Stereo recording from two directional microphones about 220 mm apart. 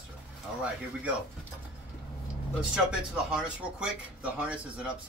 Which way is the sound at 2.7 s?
5° right (ahead or behind).